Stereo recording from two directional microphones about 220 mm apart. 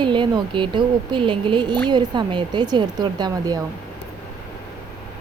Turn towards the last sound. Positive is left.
turn(degrees=-20)  # may be behind; listen again after turning